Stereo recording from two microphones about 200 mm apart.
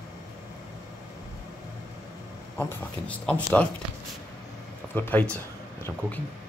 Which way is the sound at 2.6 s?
5° left (ahead or behind).